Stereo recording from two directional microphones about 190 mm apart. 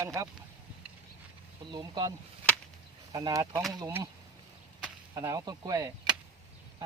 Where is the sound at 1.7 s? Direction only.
25° right (ahead or behind).